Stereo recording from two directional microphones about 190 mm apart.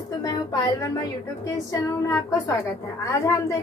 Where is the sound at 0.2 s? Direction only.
20° left (ahead or behind).